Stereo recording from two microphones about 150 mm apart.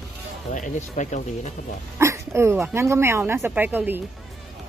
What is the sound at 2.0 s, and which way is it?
A woman's voice, 20° right (ahead or behind).